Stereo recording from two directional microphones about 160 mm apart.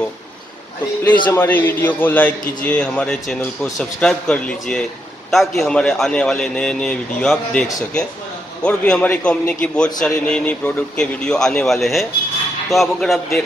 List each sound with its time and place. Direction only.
1.3 s a man's voice: 15° left (ahead or behind)